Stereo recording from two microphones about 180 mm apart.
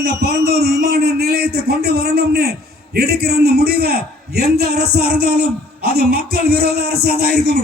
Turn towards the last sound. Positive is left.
turn(degrees=-60)  # may be behind; listen again after turning